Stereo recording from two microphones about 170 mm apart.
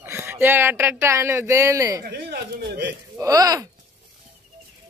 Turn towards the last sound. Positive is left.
turn(degrees=-20)  # may be behind; listen again after turning